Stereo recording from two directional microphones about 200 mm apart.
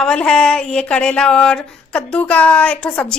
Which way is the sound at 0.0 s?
5° left (ahead or behind).